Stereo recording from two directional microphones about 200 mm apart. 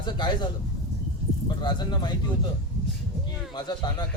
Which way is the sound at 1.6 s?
20° left (ahead or behind).